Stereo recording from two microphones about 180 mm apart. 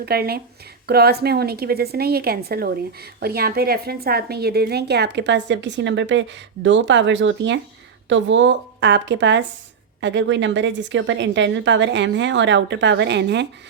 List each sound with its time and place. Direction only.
0.0 s a woman's voice: 60° right (ahead or behind)